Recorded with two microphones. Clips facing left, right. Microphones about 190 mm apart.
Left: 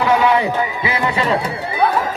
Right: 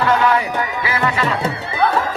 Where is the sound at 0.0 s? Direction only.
10° left (ahead or behind).